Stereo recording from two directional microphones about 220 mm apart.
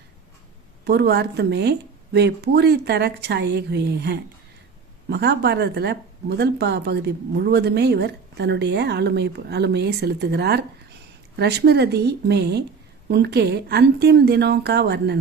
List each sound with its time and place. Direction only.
0.9 s speech: 50° right (ahead or behind)